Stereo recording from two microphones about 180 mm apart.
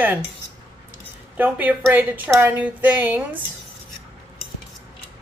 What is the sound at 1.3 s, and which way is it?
A woman's voice, 10° right (ahead or behind).